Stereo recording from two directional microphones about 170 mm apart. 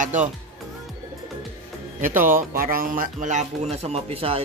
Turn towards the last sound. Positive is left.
turn(degrees=-35)  # may be behind; listen again after turning